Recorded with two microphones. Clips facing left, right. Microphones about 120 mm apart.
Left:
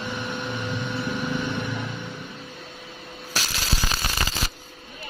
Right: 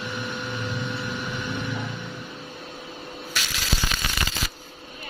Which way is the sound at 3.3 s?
35° left (ahead or behind).